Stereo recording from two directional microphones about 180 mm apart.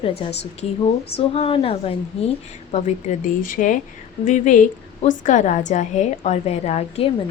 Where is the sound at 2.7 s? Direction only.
40° left (ahead or behind).